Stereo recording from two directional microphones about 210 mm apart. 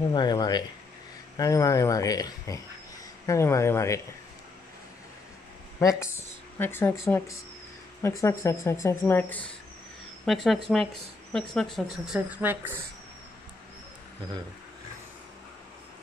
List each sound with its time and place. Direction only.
0.1 s speech: 20° left (ahead or behind)
5.8 s speech: 15° left (ahead or behind); by 12.7 s 10° right (ahead or behind)